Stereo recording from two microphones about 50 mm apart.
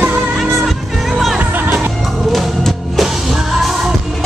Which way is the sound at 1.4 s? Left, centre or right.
Right.